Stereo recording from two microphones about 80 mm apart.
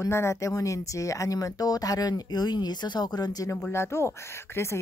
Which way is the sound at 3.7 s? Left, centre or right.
Left.